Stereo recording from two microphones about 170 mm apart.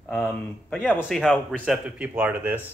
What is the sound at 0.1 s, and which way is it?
Speech, centre (ahead or behind).